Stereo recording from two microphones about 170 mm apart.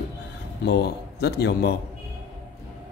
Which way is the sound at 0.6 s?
75° left (ahead or behind).